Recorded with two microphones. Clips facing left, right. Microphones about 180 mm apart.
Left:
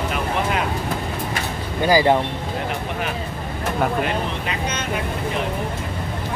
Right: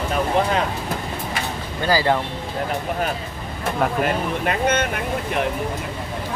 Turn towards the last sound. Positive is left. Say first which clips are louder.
# right 6 dB
turn(degrees=-55)  # may be behind; listen again after turning